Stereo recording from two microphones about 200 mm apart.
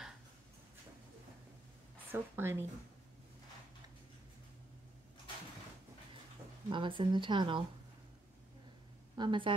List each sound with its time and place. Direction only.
2.1 s speech: 10° right (ahead or behind)
6.7 s speech: 25° right (ahead or behind)
9.1 s a woman's voice: 25° right (ahead or behind)